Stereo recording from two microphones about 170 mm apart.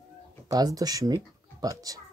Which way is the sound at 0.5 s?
20° right (ahead or behind).